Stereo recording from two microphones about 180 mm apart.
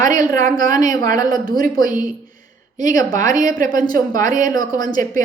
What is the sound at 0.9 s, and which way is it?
Speech, 20° left (ahead or behind).